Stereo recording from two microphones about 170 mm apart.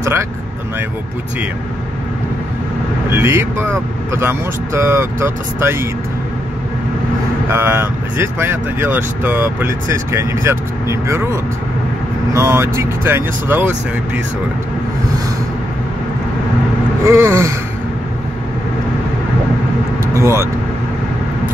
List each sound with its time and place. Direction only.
3.1 s speech: 15° right (ahead or behind)
7.4 s speech: 15° right (ahead or behind)
12.3 s speech: 15° right (ahead or behind)
17.0 s speech: 15° right (ahead or behind)
20.0 s vehicle: 15° right (ahead or behind)